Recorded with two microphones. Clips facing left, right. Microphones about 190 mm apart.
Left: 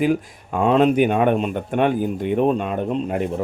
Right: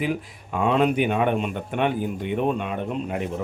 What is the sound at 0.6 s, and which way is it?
Speech, 35° left (ahead or behind).